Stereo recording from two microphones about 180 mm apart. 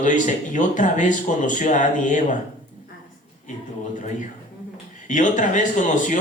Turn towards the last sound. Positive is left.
turn(degrees=45)  # may be behind; listen again after turning